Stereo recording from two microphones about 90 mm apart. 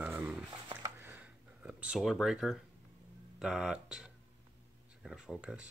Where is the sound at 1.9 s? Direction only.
Centre (ahead or behind).